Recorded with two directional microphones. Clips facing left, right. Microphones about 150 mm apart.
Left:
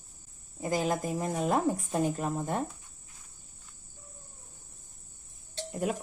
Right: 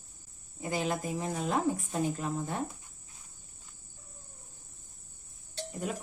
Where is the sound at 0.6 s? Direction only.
40° left (ahead or behind).